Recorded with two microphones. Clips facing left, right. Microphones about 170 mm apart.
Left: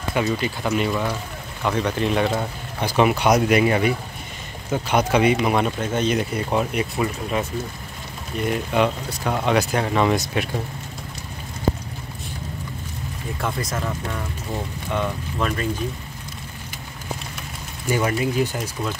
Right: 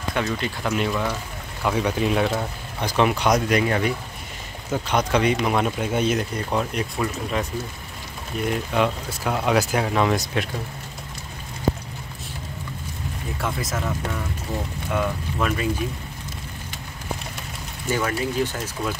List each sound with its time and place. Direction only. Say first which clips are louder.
0.1 s speech: left 3 dB; 5° left (ahead or behind)
5.8 s speech: even; 10° right (ahead or behind)
6.1 s speech: left 2 dB; 5° left (ahead or behind)
13.4 s speech: left 1 dB; centre (ahead or behind)
17.8 s speech: left 3 dB; 15° left (ahead or behind)